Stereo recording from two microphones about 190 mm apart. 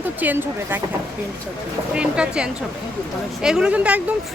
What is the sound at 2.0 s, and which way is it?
Speech, 5° right (ahead or behind).